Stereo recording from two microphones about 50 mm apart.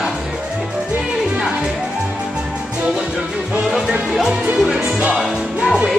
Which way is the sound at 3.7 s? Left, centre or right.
Centre.